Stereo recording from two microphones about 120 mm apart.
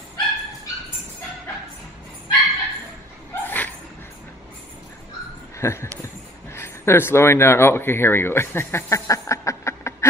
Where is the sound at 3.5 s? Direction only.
15° left (ahead or behind).